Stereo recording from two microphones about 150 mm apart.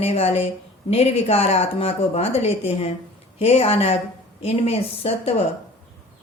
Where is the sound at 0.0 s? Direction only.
40° left (ahead or behind).